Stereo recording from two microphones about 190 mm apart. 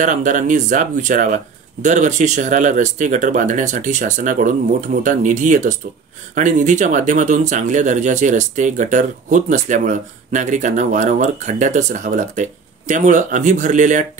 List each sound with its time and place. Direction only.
0.0 s speech: 40° right (ahead or behind)